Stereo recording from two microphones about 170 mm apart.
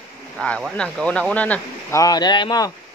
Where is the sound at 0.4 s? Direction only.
5° left (ahead or behind).